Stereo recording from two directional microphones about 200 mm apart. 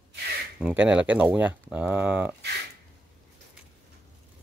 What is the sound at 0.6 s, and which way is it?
Speech, 5° right (ahead or behind).